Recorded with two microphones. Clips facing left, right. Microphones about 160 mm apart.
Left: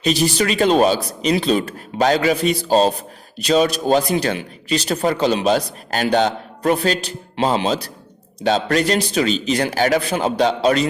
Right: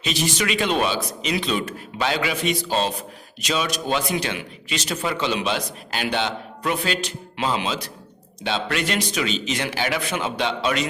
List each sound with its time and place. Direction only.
0.0 s speech: 35° left (ahead or behind)